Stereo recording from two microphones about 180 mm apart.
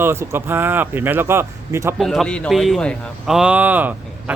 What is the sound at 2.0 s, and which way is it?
Speech, centre (ahead or behind).